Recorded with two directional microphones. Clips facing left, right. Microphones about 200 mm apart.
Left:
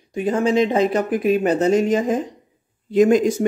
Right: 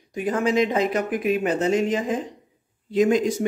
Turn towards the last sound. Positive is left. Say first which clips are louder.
# left 5 dB
turn(degrees=50)  # may be behind; listen again after turning